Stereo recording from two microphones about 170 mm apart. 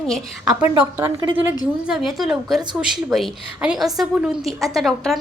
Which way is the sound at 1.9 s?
Centre (ahead or behind).